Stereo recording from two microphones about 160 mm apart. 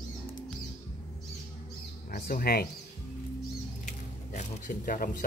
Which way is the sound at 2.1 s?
70° left (ahead or behind).